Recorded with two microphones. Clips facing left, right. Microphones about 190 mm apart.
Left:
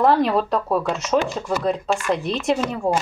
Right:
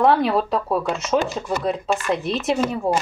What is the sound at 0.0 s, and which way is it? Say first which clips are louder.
Speech: even; centre (ahead or behind).